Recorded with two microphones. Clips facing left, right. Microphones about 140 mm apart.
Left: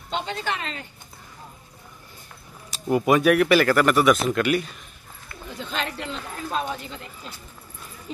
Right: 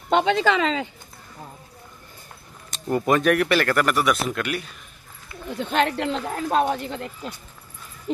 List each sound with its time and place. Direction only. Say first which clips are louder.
0.1 s speech: right 9 dB; 75° right (ahead or behind)
2.7 s speech: left 1 dB; 10° left (ahead or behind)
5.6 s speech: right 8 dB; 65° right (ahead or behind)